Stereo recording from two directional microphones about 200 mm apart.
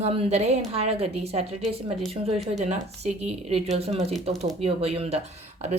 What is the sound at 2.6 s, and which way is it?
Speech, 35° right (ahead or behind).